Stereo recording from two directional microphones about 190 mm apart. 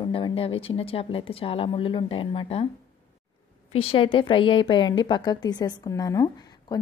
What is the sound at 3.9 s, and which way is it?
A woman's voice, 25° left (ahead or behind).